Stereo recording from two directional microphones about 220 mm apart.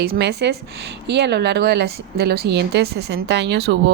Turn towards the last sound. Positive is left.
turn(degrees=-50)  # may be behind; listen again after turning